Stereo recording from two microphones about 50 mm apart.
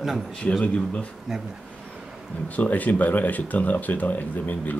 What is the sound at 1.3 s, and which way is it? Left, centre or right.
Speech, centre.